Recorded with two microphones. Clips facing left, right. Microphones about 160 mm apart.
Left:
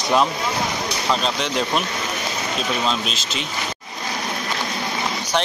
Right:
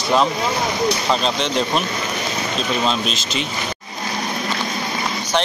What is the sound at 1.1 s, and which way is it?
Speech, 5° left (ahead or behind).